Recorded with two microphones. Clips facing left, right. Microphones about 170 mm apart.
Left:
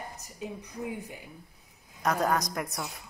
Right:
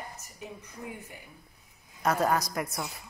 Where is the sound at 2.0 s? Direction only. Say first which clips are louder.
Right 1 dB; 5° right (ahead or behind).